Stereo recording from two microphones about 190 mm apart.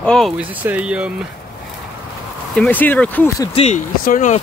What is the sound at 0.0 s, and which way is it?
Speech, 5° left (ahead or behind).